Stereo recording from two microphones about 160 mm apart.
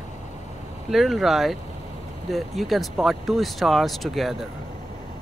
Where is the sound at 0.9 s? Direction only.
Centre (ahead or behind).